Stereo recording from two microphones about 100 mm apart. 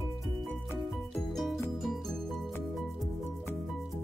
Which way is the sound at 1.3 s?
Centre (ahead or behind).